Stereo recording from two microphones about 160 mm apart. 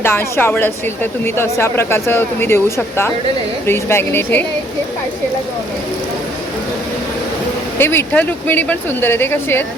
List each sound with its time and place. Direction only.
0.0 s speech: 15° left (ahead or behind)
7.8 s speech: 15° left (ahead or behind)